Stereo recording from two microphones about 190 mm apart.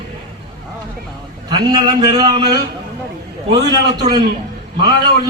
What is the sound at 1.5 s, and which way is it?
A man's voice, 20° right (ahead or behind).